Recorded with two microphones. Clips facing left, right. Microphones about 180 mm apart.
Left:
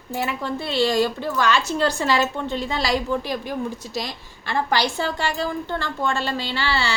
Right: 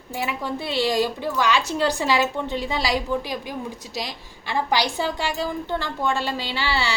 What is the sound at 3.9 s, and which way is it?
Speech, 50° left (ahead or behind).